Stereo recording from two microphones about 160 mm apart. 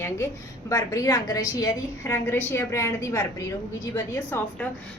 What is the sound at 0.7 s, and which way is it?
A woman's voice, 20° left (ahead or behind).